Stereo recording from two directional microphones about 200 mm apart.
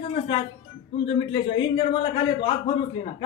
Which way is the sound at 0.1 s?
25° left (ahead or behind).